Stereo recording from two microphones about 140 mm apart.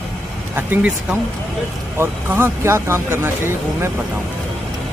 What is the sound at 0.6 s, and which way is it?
Speech, 10° right (ahead or behind).